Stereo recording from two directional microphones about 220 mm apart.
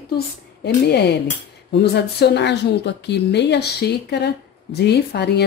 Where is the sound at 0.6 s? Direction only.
50° left (ahead or behind).